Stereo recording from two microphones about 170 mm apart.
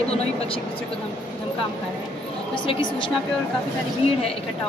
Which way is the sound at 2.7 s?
30° left (ahead or behind).